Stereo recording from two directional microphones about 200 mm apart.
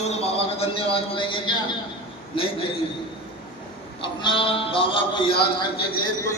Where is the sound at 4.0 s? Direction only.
25° left (ahead or behind).